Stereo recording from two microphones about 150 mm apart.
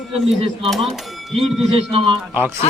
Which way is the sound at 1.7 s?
40° right (ahead or behind).